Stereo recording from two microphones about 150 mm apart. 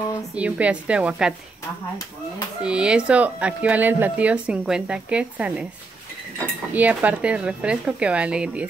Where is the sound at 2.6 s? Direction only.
5° right (ahead or behind).